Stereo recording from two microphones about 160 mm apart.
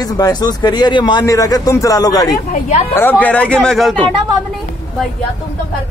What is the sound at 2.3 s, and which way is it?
Speech, 55° left (ahead or behind).